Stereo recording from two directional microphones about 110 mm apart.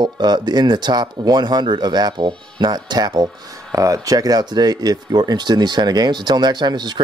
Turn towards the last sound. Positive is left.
turn(degrees=-40)  # may be behind; listen again after turning